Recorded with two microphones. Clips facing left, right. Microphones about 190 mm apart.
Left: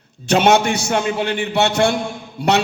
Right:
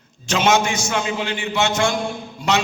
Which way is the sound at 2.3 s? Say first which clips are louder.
Left 4 dB; 60° left (ahead or behind).